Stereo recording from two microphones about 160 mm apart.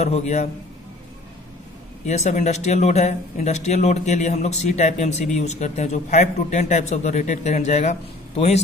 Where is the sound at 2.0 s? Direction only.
45° left (ahead or behind).